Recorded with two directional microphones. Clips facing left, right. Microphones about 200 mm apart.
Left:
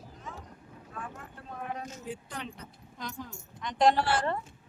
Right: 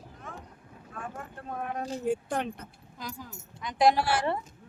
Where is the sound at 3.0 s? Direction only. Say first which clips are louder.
Left 1 dB; 5° right (ahead or behind).